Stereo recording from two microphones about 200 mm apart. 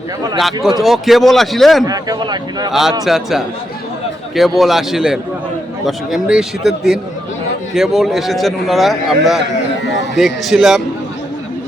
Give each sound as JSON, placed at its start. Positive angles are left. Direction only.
{"t": 0.3, "sound": "a man's voice", "side_deg": 0}
{"t": 1.8, "sound": "speech", "side_deg": -20}
{"t": 3.0, "sound": "a man's voice", "side_deg": 0}
{"t": 9.8, "sound": "a sound", "side_deg": 60}
{"t": 10.2, "sound": "a man's voice", "side_deg": 0}